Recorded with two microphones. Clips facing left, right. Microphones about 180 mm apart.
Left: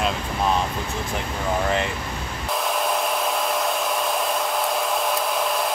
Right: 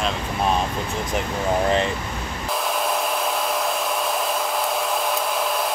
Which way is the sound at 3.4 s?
Centre (ahead or behind).